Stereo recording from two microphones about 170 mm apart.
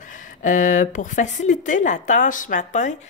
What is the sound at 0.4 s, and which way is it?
A woman's voice, 50° left (ahead or behind).